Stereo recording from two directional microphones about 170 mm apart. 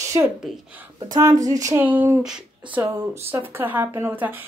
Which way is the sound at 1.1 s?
20° right (ahead or behind).